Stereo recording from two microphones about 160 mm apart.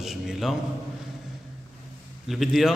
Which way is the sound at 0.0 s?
Centre (ahead or behind).